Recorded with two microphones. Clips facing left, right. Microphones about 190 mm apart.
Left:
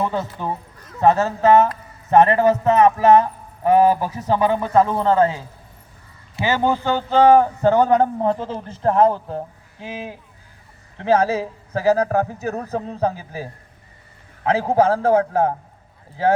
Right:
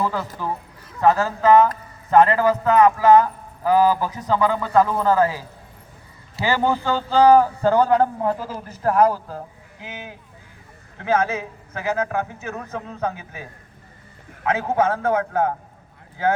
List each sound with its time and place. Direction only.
0.0 s a man's voice: 25° left (ahead or behind)
6.4 s a man's voice: 20° left (ahead or behind)